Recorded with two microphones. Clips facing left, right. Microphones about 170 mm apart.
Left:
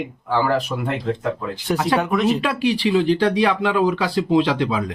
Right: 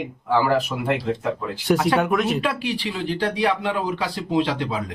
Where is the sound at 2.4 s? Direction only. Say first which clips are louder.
Left 5 dB; 90° left.